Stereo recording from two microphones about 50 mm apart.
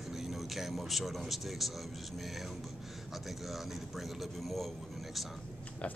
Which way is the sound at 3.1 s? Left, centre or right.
Centre.